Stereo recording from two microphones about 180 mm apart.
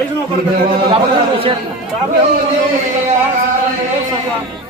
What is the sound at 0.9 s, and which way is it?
Speech, 30° right (ahead or behind).